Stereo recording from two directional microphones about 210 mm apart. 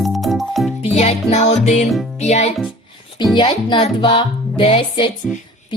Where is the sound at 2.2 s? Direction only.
30° left (ahead or behind).